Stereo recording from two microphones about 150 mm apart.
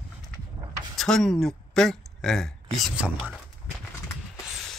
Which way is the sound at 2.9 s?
10° right (ahead or behind).